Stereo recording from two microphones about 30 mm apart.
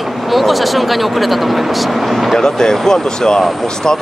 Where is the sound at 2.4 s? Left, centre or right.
Centre.